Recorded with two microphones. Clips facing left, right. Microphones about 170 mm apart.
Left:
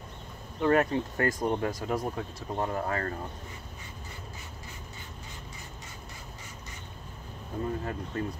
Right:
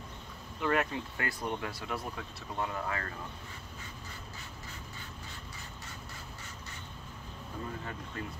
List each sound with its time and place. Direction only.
0.6 s speech: 35° left (ahead or behind)
7.6 s speech: 35° left (ahead or behind)